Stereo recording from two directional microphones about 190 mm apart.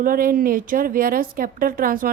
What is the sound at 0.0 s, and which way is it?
A woman's voice, 50° right (ahead or behind).